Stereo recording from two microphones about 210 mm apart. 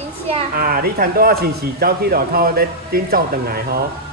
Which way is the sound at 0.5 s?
45° right (ahead or behind).